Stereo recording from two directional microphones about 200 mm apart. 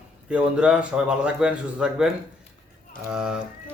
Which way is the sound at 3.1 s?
5° right (ahead or behind).